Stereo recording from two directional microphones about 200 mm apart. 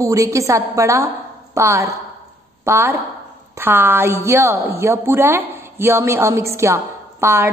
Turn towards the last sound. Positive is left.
turn(degrees=-10)  # may be behind; listen again after turning